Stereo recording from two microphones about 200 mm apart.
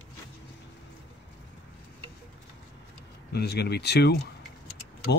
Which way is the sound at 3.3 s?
55° left (ahead or behind).